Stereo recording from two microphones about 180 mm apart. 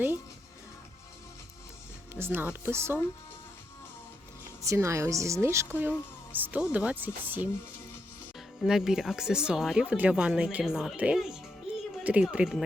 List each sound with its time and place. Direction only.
2.1 s speech: 10° right (ahead or behind)
4.6 s speech: 15° right (ahead or behind)
8.6 s speech: 5° right (ahead or behind)
11.7 s music: 5° right (ahead or behind)
12.0 s speech: 5° right (ahead or behind)